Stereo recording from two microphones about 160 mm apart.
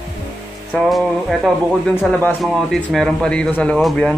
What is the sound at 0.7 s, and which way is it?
A man's voice, centre (ahead or behind).